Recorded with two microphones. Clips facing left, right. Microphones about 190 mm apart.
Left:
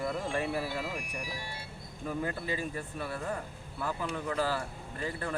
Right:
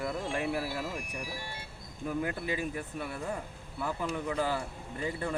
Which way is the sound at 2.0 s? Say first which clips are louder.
Right 1 dB; 10° right (ahead or behind).